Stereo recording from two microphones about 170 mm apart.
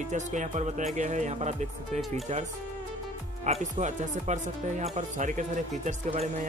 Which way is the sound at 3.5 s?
40° right (ahead or behind).